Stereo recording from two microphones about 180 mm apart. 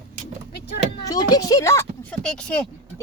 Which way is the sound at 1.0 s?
20° left (ahead or behind).